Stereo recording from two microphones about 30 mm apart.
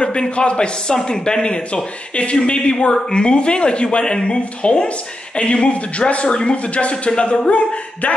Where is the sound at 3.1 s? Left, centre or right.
Left.